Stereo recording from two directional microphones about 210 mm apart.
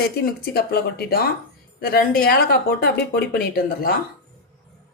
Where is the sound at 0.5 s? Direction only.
50° left (ahead or behind).